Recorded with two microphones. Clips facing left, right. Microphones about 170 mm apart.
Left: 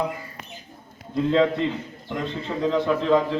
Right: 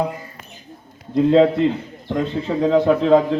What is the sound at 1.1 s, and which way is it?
A man's voice, 40° right (ahead or behind).